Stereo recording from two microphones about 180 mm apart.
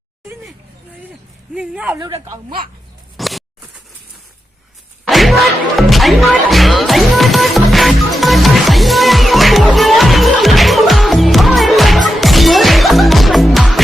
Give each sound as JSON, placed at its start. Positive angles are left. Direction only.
{"t": 1.5, "sound": "speech", "side_deg": -5}
{"t": 2.0, "sound": "a woman's voice", "side_deg": -25}
{"t": 3.2, "sound": "a sound", "side_deg": 0}
{"t": 5.0, "sound": "music", "side_deg": 0}